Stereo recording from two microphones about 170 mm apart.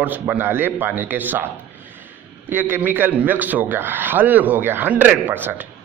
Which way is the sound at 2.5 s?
10° right (ahead or behind).